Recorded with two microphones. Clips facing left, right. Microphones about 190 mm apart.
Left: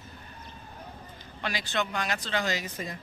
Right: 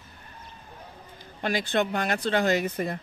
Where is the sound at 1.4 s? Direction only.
50° right (ahead or behind).